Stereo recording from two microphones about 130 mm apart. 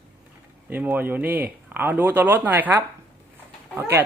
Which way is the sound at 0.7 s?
15° right (ahead or behind).